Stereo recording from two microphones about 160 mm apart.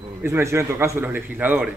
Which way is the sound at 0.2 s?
15° right (ahead or behind).